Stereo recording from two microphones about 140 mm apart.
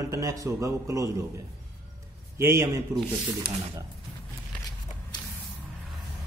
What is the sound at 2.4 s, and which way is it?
Speech, 20° right (ahead or behind).